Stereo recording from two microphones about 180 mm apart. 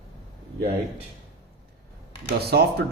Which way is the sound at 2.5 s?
60° right (ahead or behind).